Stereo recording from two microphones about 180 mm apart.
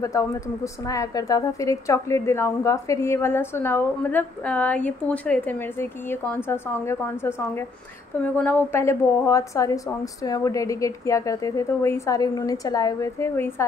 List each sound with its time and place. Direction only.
0.0 s a woman's voice: 15° left (ahead or behind)